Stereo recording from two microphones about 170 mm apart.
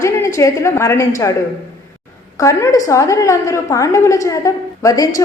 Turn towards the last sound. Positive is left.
turn(degrees=20)  # may be behind; listen again after turning